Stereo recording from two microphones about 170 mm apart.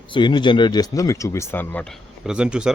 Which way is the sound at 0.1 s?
25° left (ahead or behind).